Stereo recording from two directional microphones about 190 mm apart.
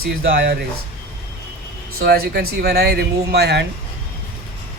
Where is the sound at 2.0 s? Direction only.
55° right (ahead or behind).